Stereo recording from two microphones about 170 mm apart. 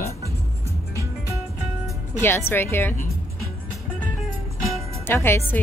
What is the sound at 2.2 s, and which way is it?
Speech, 15° left (ahead or behind).